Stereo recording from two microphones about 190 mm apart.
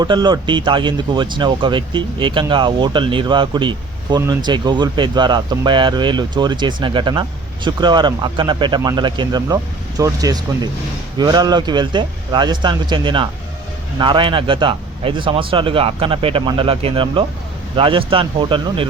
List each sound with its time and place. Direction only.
0.0 s speech: 20° right (ahead or behind)